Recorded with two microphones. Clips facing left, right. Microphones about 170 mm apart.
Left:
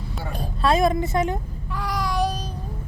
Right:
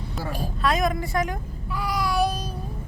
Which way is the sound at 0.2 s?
Centre (ahead or behind).